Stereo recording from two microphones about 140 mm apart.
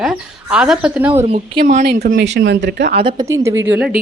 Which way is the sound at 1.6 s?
65° right (ahead or behind).